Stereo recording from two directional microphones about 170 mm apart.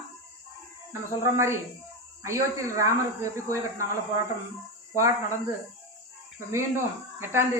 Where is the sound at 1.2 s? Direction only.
15° right (ahead or behind).